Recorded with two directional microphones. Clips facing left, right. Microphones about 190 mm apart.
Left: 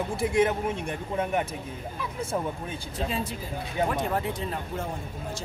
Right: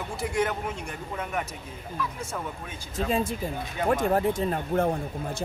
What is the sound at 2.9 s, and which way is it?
Speech, 45° right (ahead or behind).